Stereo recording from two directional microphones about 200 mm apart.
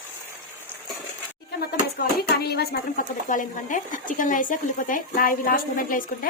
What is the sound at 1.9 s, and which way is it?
Speech, 50° left (ahead or behind).